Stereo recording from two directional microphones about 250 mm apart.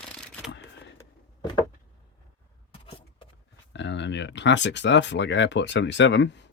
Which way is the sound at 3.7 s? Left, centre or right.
Left.